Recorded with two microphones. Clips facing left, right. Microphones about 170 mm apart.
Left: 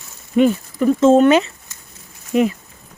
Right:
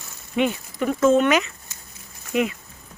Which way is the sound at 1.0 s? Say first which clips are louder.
Left 5 dB; 30° left (ahead or behind).